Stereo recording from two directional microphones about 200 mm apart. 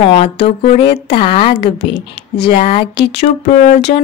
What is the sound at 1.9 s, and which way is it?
Speech, 55° left (ahead or behind).